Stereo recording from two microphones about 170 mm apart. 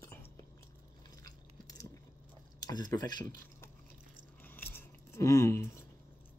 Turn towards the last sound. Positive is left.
turn(degrees=15)  # may be behind; listen again after turning